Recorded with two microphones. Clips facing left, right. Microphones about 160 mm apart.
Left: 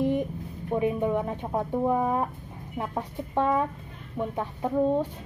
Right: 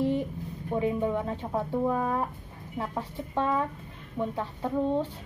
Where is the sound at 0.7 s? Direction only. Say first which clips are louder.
Left 2 dB; 15° left (ahead or behind).